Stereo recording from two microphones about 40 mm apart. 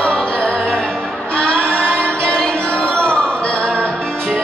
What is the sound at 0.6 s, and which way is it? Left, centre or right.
Music, centre.